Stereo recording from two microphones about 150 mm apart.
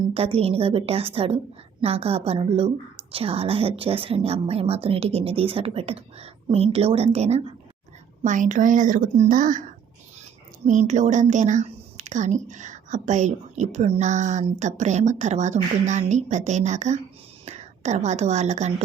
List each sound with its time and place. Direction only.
0.1 s a woman's voice: 40° right (ahead or behind)
8.2 s a woman's voice: 55° right (ahead or behind)
10.7 s a woman's voice: 55° right (ahead or behind)